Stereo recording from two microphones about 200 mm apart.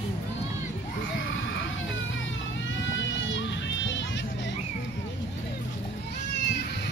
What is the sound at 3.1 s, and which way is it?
Music, 70° left (ahead or behind).